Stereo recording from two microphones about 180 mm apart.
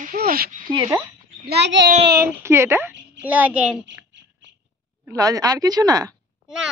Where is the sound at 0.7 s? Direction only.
25° right (ahead or behind).